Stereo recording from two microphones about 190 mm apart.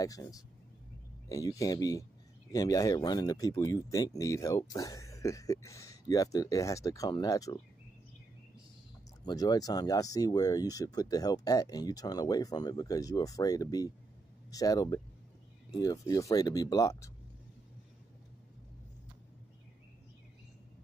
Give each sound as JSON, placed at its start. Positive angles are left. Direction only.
{"t": 0.0, "sound": "speech", "side_deg": 20}
{"t": 9.2, "sound": "speech", "side_deg": 20}